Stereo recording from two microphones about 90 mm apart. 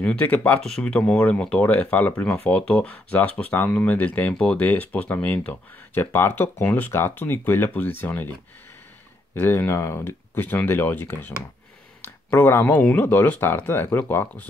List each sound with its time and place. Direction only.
0.0 s speech: 15° left (ahead or behind)
0.6 s speech: 5° left (ahead or behind); by 8.3 s 25° left (ahead or behind)
9.3 s speech: 25° left (ahead or behind)